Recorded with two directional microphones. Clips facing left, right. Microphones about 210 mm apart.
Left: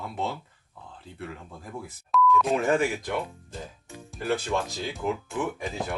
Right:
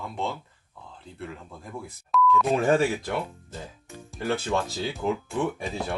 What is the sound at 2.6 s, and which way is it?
Speech, 30° right (ahead or behind).